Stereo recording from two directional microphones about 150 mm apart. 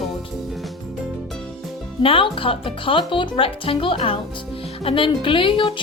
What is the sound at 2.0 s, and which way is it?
A woman's voice, 35° left (ahead or behind).